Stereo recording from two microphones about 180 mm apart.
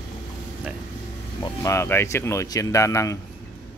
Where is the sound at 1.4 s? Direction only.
15° left (ahead or behind).